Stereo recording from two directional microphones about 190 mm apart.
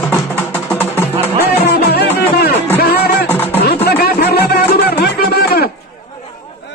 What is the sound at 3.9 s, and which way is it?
Music, 55° left (ahead or behind).